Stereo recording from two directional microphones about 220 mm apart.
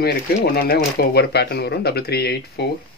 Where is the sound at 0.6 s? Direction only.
45° left (ahead or behind).